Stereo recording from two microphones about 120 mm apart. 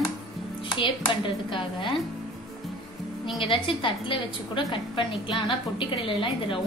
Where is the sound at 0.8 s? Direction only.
45° left (ahead or behind).